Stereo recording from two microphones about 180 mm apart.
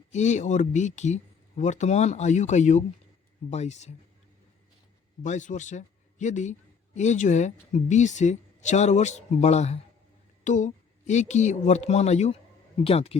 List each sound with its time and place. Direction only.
0.1 s a man's voice: 40° left (ahead or behind)
5.2 s a man's voice: 45° left (ahead or behind)